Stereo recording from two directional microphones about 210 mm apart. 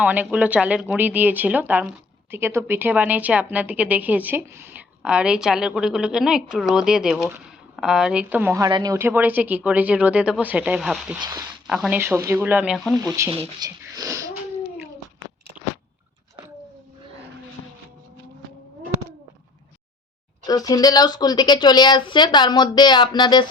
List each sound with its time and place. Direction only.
0.0 s a woman's voice: 5° right (ahead or behind)
11.2 s a woman's voice: 15° right (ahead or behind)
11.7 s a woman's voice: 5° right (ahead or behind)
13.3 s speech: 25° right (ahead or behind)
13.7 s speech: 15° right (ahead or behind)
20.5 s speech: 15° left (ahead or behind)